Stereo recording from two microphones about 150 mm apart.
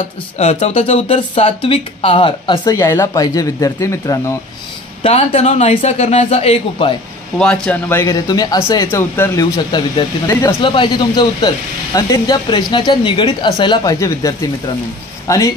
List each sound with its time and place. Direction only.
0.4 s speech: 45° left (ahead or behind); by 4.4 s 20° left (ahead or behind)
5.0 s a man's voice: 45° left (ahead or behind)
7.3 s speech: 5° left (ahead or behind)
7.9 s speech: 20° left (ahead or behind)
9.4 s speech: 30° left (ahead or behind)